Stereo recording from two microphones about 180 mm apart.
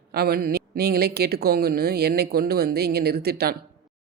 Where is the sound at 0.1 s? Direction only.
60° right (ahead or behind).